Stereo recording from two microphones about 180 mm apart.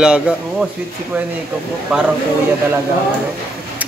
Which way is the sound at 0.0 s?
5° right (ahead or behind).